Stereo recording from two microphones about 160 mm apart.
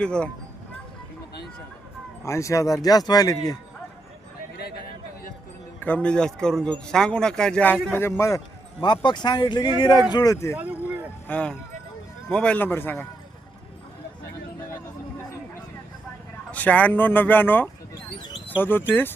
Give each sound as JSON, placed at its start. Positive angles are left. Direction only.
{"t": 0.0, "sound": "speech", "side_deg": 5}
{"t": 2.2, "sound": "speech", "side_deg": 20}
{"t": 5.8, "sound": "speech", "side_deg": 10}
{"t": 9.0, "sound": "speech", "side_deg": 25}
{"t": 10.6, "sound": "vehicle", "side_deg": -10}
{"t": 11.3, "sound": "speech", "side_deg": 10}
{"t": 16.5, "sound": "speech", "side_deg": 10}